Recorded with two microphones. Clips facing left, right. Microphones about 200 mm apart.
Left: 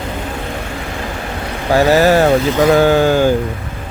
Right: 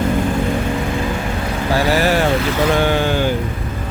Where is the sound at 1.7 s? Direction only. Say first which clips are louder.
Left 6 dB; 45° left (ahead or behind).